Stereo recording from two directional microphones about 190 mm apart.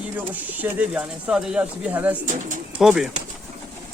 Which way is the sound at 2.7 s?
5° right (ahead or behind).